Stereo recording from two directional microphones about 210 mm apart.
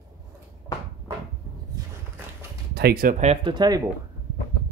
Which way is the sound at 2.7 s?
45° right (ahead or behind).